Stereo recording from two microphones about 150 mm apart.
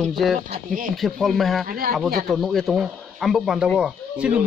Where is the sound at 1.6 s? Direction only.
75° right (ahead or behind).